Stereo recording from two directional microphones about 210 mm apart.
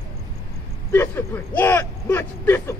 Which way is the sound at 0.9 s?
10° left (ahead or behind).